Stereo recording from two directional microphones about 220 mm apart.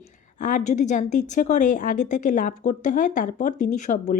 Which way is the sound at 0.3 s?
35° left (ahead or behind).